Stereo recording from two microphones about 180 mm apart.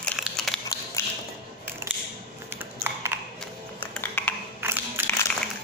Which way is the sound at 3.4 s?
10° left (ahead or behind).